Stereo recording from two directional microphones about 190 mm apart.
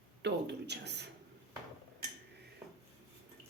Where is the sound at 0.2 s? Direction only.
65° right (ahead or behind).